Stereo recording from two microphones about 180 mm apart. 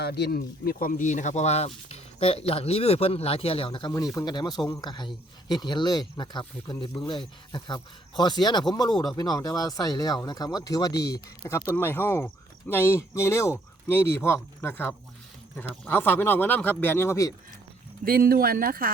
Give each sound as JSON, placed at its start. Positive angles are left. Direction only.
{"t": 0.0, "sound": "speech", "side_deg": 65}
{"t": 7.5, "sound": "speech", "side_deg": 25}
{"t": 18.0, "sound": "speech", "side_deg": -55}